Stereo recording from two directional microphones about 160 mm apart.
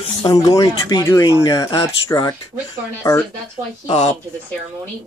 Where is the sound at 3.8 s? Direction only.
45° left (ahead or behind).